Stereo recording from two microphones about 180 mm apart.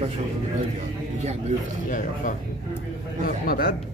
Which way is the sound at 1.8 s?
50° left (ahead or behind).